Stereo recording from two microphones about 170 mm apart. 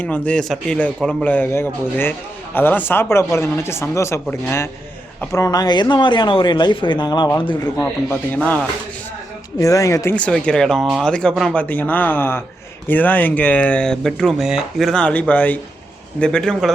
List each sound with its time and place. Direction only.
0.0 s speech: 10° left (ahead or behind); by 7.7 s 25° left (ahead or behind)
7.8 s speech: 10° left (ahead or behind)
9.6 s a man's voice: 20° left (ahead or behind); by 16.7 s centre (ahead or behind)